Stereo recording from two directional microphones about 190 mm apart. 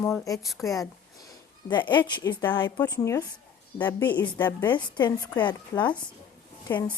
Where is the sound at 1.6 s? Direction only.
25° left (ahead or behind).